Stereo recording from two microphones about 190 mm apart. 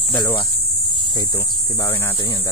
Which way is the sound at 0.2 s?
25° left (ahead or behind).